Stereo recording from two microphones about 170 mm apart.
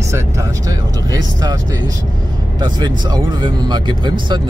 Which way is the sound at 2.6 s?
25° right (ahead or behind).